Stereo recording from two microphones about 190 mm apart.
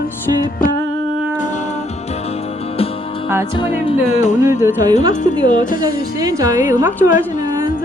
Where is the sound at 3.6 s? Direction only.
25° left (ahead or behind).